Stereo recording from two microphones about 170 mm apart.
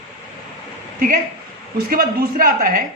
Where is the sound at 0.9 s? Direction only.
50° right (ahead or behind).